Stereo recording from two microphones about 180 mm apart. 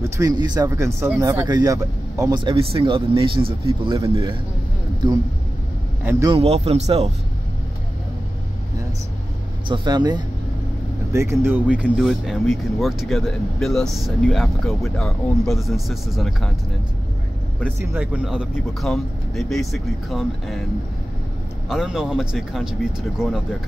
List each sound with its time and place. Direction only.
0.2 s speech: 25° right (ahead or behind)
6.0 s speech: 15° right (ahead or behind)
6.3 s a man's voice: 35° right (ahead or behind)
9.7 s speech: 25° right (ahead or behind); by 16.5 s centre (ahead or behind)
17.6 s speech: 10° right (ahead or behind)
21.6 s speech: centre (ahead or behind)